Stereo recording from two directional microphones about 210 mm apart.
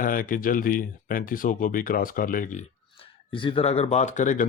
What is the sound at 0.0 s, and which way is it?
Speech, 40° left (ahead or behind).